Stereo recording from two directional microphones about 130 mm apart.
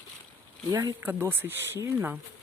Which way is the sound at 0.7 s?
30° right (ahead or behind).